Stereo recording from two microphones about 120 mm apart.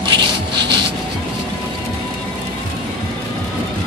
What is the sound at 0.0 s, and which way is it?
Rub, 40° right (ahead or behind).